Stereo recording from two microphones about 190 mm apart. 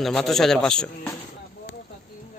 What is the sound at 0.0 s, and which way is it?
A man's voice, centre (ahead or behind).